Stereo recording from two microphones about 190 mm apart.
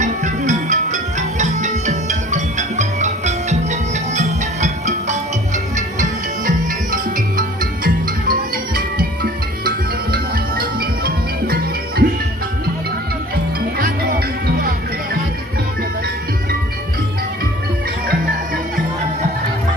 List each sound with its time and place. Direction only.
0.0 s music: 40° right (ahead or behind)
13.3 s music: 50° right (ahead or behind)